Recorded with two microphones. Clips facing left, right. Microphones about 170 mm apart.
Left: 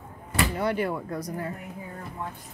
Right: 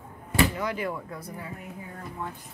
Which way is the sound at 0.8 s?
40° left (ahead or behind).